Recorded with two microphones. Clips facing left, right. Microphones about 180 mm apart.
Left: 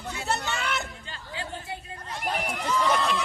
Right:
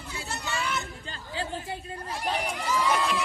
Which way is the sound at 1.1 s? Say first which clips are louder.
Right 4 dB; 30° right (ahead or behind).